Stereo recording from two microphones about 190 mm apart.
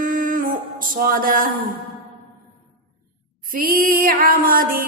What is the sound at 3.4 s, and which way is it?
Female singing, 50° right (ahead or behind).